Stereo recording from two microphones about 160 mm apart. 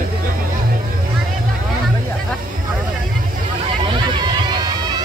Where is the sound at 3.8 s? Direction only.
30° right (ahead or behind).